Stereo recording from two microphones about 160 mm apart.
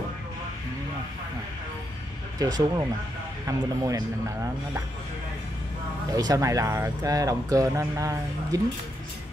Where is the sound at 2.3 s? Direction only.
25° right (ahead or behind).